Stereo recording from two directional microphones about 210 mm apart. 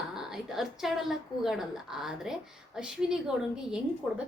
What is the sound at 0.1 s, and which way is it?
A woman's voice, centre (ahead or behind).